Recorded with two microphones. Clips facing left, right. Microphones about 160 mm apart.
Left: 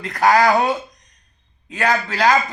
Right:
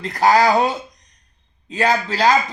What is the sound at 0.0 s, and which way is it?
A man's voice, 30° right (ahead or behind).